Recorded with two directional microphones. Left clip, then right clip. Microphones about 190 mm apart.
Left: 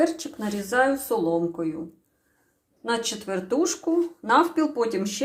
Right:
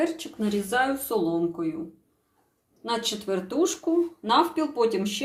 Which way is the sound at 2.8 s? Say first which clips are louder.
Left 1 dB; 5° left (ahead or behind).